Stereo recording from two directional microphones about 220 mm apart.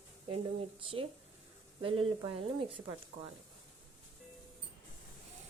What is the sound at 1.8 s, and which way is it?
Speech, 25° right (ahead or behind).